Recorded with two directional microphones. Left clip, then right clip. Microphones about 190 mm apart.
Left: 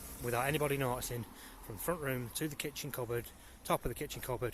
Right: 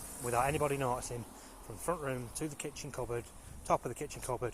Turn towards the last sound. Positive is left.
turn(degrees=20)  # may be behind; listen again after turning